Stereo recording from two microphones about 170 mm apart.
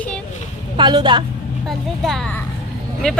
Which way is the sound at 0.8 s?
25° right (ahead or behind).